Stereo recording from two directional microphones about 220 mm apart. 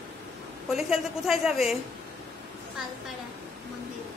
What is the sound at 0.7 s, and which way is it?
A woman's voice, centre (ahead or behind).